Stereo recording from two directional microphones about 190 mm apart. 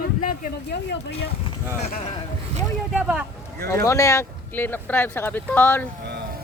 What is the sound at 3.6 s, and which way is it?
Speech, 15° left (ahead or behind).